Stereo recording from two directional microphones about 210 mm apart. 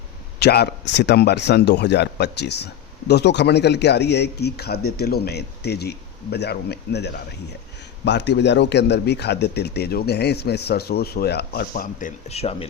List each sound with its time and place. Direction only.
0.3 s a man's voice: 50° left (ahead or behind); by 12.6 s 30° left (ahead or behind)